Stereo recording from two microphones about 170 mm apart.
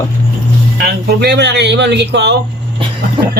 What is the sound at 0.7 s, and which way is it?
A man's voice, 70° right (ahead or behind).